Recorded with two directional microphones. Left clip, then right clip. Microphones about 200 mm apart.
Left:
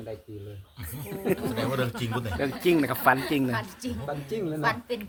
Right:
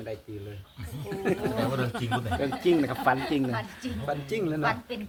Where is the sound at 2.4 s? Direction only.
25° left (ahead or behind).